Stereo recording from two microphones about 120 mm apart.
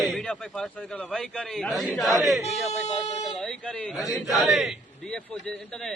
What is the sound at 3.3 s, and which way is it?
A man's voice, 5° left (ahead or behind).